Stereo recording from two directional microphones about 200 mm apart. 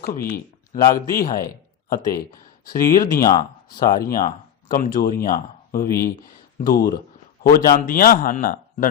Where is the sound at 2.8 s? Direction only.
15° left (ahead or behind).